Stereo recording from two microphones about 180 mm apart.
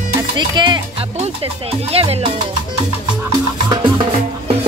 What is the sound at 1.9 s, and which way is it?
Speech, 35° right (ahead or behind).